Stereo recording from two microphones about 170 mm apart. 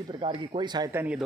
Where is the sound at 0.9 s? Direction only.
10° right (ahead or behind).